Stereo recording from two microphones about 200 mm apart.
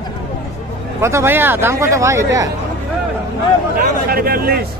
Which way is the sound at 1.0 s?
10° right (ahead or behind).